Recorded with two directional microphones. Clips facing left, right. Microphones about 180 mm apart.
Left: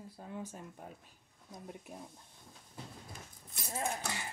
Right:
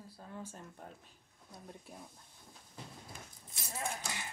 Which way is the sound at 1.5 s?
20° left (ahead or behind).